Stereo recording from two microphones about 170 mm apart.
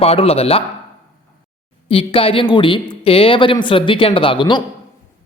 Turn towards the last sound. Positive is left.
turn(degrees=30)  # may be behind; listen again after turning